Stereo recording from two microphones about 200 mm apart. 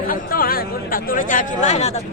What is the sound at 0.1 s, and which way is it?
Speech, 45° left (ahead or behind).